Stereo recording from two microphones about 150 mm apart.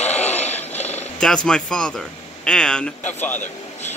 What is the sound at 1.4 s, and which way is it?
Speech, 5° left (ahead or behind).